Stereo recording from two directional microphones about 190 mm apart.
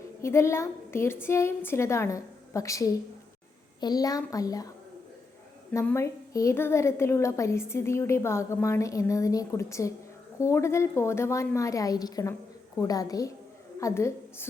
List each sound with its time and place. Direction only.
0.2 s a woman's voice: 15° left (ahead or behind)
5.7 s a woman's voice: 15° left (ahead or behind)